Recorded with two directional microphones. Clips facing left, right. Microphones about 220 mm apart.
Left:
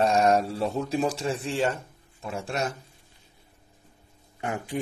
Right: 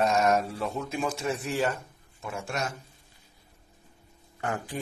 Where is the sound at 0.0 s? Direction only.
30° left (ahead or behind).